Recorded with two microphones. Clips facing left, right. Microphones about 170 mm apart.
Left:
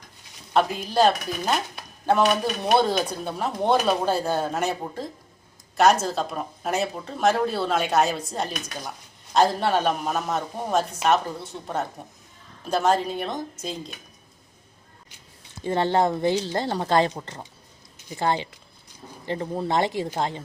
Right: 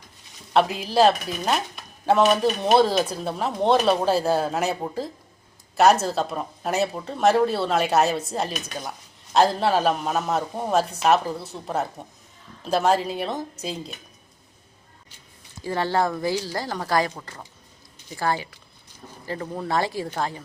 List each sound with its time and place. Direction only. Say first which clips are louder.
0.9 s speech: right 2 dB; centre (ahead or behind)
15.6 s speech: left 2 dB; 20° left (ahead or behind)